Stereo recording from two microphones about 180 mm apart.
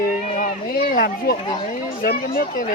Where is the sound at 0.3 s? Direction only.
55° left (ahead or behind).